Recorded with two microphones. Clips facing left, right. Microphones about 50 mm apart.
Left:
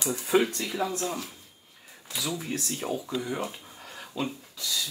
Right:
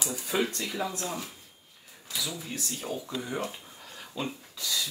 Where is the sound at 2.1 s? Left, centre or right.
Left.